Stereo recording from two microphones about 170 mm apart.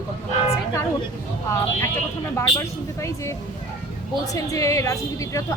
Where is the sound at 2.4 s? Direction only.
15° left (ahead or behind).